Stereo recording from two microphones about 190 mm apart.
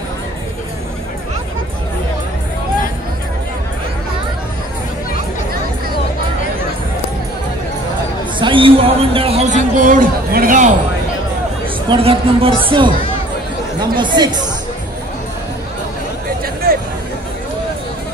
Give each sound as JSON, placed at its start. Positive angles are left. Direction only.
{"t": 8.4, "sound": "a sound", "side_deg": -25}
{"t": 11.9, "sound": "speech", "side_deg": -30}
{"t": 13.9, "sound": "speech", "side_deg": -25}